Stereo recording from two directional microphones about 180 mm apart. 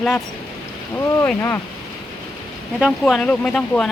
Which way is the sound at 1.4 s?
15° left (ahead or behind).